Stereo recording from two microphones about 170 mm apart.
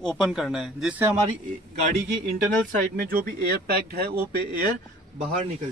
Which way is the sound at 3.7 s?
65° right (ahead or behind).